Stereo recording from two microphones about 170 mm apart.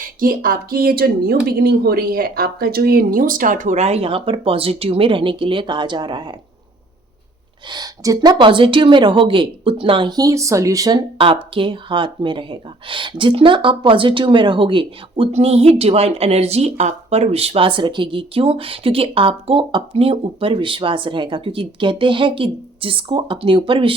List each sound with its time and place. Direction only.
0.0 s a woman's voice: 55° right (ahead or behind); by 6.3 s 25° right (ahead or behind)
7.7 s a woman's voice: 20° right (ahead or behind)